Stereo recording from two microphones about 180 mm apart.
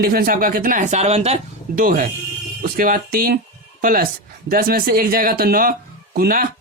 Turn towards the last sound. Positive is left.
turn(degrees=-55)  # may be behind; listen again after turning